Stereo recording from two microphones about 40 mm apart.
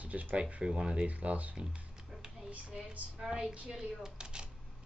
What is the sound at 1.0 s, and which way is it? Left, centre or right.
Speech, right.